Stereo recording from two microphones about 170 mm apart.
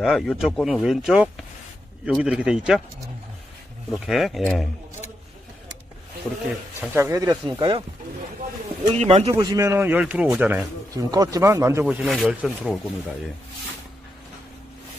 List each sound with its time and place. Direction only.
0.0 s speech: centre (ahead or behind)
3.9 s speech: centre (ahead or behind)
6.8 s speech: 10° right (ahead or behind)
8.9 s speech: 40° right (ahead or behind)
9.3 s speech: 20° right (ahead or behind)
10.9 s speech: 20° right (ahead or behind)
11.8 s speech: 5° right (ahead or behind)